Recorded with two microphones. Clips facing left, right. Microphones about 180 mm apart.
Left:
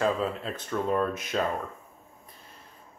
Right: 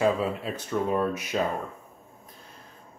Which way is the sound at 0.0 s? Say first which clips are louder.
Right 2 dB; 10° right (ahead or behind).